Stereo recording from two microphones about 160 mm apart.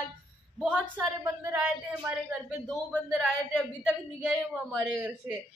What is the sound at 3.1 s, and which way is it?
A woman's voice, 5° right (ahead or behind).